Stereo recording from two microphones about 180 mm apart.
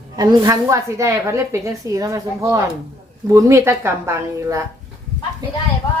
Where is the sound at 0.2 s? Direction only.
20° right (ahead or behind).